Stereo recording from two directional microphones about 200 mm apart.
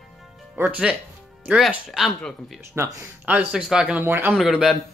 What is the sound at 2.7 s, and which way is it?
Speech, 10° right (ahead or behind).